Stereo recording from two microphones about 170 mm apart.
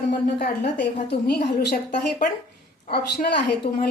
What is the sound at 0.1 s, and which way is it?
Speech, 70° left (ahead or behind).